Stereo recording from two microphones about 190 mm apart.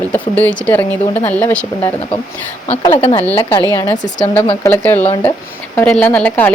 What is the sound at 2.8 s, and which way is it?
Speech, 30° left (ahead or behind).